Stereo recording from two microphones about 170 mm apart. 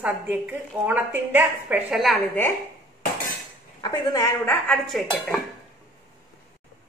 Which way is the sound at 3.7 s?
25° left (ahead or behind).